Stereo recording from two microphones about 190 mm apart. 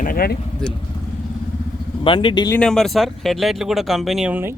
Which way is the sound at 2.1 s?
25° left (ahead or behind).